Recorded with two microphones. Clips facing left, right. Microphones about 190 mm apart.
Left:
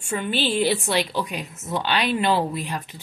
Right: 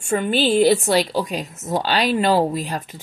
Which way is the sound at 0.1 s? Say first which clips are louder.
Right 6 dB; 45° right (ahead or behind).